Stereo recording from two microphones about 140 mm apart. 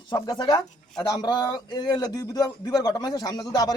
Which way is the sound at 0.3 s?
30° left (ahead or behind).